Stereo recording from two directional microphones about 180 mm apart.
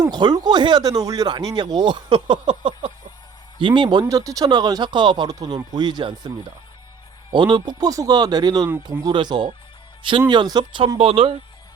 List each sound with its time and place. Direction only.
0.0 s speech: 25° right (ahead or behind)
7.3 s speech: 25° right (ahead or behind)